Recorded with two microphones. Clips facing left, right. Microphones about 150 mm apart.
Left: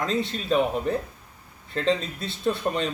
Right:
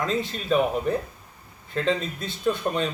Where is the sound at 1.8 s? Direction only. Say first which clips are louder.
Even; 30° left (ahead or behind).